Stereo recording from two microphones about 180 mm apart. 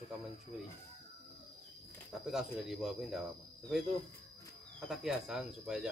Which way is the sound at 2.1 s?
Centre (ahead or behind).